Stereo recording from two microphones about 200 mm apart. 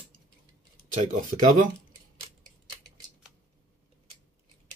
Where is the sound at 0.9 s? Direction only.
40° right (ahead or behind).